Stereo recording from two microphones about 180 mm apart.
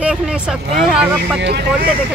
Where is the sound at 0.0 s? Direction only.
5° right (ahead or behind).